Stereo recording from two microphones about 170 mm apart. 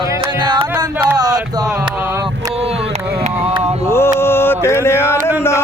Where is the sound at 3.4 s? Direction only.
35° right (ahead or behind).